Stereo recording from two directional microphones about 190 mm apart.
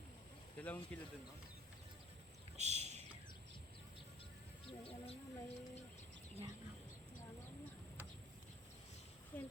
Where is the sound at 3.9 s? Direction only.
30° left (ahead or behind).